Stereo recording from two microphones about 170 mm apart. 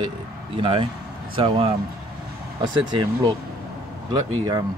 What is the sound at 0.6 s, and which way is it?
Speech, 30° right (ahead or behind).